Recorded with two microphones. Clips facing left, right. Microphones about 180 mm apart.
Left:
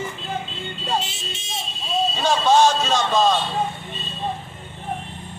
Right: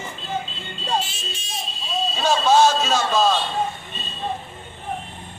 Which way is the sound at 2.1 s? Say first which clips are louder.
Right 1 dB; 10° right (ahead or behind).